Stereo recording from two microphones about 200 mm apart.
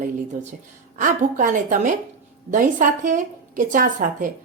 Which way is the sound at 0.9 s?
40° right (ahead or behind).